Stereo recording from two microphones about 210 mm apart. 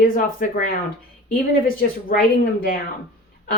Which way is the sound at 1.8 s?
40° left (ahead or behind).